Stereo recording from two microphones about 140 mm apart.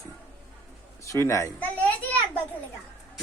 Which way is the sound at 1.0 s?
20° left (ahead or behind).